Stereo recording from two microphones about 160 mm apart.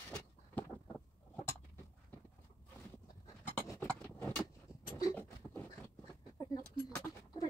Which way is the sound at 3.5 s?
20° left (ahead or behind).